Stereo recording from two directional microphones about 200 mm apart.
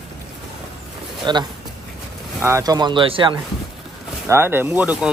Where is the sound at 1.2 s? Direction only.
20° right (ahead or behind).